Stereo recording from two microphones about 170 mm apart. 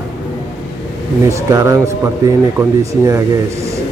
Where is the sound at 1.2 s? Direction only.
20° right (ahead or behind).